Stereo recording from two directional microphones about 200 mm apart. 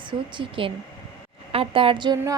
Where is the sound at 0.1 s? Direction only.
25° right (ahead or behind).